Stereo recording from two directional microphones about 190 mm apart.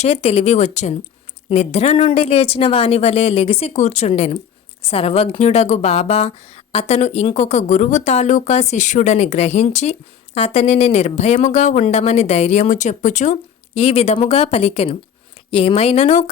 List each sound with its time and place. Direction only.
0.0 s speech: 30° left (ahead or behind)